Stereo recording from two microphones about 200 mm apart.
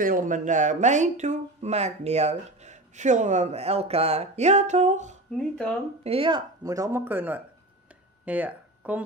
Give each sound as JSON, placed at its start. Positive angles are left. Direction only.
{"t": 0.0, "sound": "speech", "side_deg": -40}
{"t": 6.0, "sound": "speech", "side_deg": -25}